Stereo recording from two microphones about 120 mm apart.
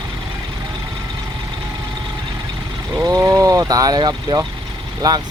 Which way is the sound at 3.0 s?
30° right (ahead or behind).